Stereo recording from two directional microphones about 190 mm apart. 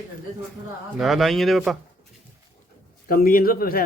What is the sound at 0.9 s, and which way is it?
Speech, centre (ahead or behind).